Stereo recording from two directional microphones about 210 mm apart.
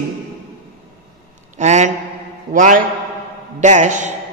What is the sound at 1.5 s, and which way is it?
A man's voice, 35° right (ahead or behind).